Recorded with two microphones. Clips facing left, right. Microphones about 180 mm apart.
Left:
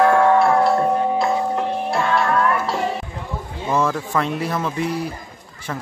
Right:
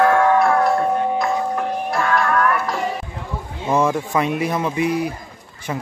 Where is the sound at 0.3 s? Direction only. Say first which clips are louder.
Left 1 dB; 25° left (ahead or behind).